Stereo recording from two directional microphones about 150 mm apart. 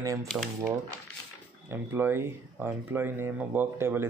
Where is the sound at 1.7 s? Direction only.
15° right (ahead or behind).